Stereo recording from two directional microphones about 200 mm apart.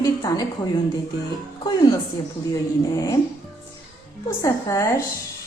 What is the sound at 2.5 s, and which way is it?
Speech, 20° left (ahead or behind).